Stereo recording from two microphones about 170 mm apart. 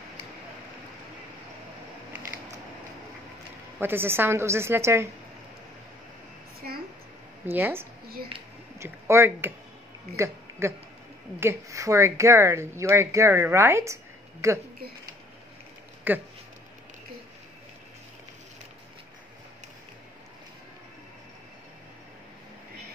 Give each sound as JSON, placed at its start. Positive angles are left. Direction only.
{"t": 3.8, "sound": "speech", "side_deg": -15}
{"t": 7.4, "sound": "speech", "side_deg": -10}
{"t": 16.1, "sound": "speech", "side_deg": -10}